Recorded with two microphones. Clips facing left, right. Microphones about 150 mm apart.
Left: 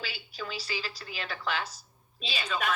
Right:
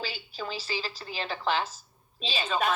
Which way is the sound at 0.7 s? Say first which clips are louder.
Right 3 dB; 35° right (ahead or behind).